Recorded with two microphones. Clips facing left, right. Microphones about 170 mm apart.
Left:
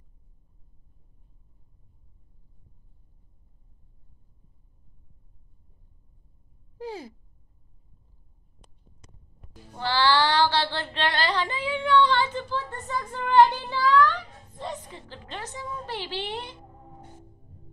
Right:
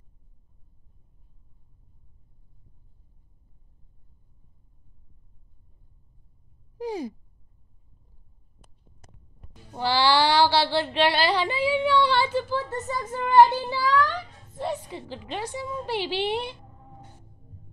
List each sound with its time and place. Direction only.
6.8 s sigh: 15° right (ahead or behind)
9.8 s child singing: 10° right (ahead or behind)
13.2 s a woman's voice: 10° right (ahead or behind)